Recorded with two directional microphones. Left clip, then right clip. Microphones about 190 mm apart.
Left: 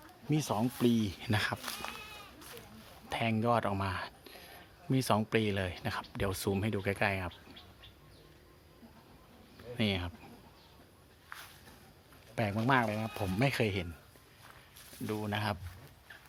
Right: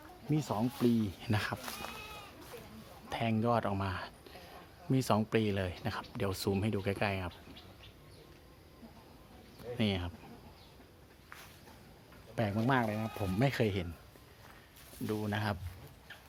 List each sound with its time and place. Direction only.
0.3 s speech: 25° left (ahead or behind)
1.2 s speech: 15° left (ahead or behind)
1.6 s speech: 45° left (ahead or behind)
3.1 s speech: 15° left (ahead or behind)
9.7 s speech: 10° left (ahead or behind)
12.4 s speech: 10° left (ahead or behind)
13.4 s speech: 5° left (ahead or behind)
15.0 s speech: 5° left (ahead or behind)